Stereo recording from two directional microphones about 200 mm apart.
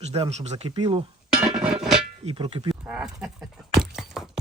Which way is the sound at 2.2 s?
25° right (ahead or behind).